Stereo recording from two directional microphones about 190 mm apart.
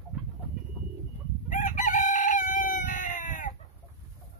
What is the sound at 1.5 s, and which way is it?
Chicken, 40° left (ahead or behind).